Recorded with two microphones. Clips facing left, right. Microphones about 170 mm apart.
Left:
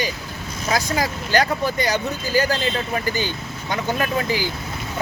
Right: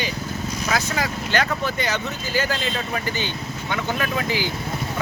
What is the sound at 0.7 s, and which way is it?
Speech, 35° left (ahead or behind).